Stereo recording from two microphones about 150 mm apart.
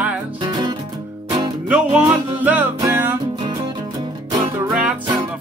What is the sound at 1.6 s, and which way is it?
Music, 10° right (ahead or behind).